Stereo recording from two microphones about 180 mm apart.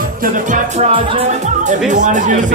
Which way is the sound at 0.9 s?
30° right (ahead or behind).